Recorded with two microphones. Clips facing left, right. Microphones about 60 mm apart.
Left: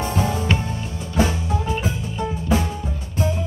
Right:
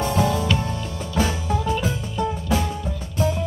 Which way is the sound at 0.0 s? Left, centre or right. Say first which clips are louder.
Right 2 dB; left.